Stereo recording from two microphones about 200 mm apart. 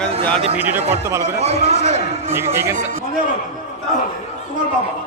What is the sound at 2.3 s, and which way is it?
Speech, 10° right (ahead or behind).